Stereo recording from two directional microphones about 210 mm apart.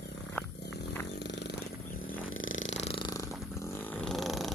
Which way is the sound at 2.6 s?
30° left (ahead or behind).